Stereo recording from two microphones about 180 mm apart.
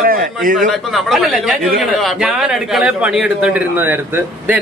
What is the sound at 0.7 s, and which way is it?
A man's voice, centre (ahead or behind).